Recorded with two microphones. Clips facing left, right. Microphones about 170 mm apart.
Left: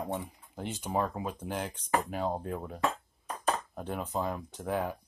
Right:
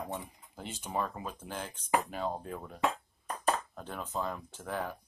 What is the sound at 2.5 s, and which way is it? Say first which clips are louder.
Speech: left 5 dB; 10° left (ahead or behind).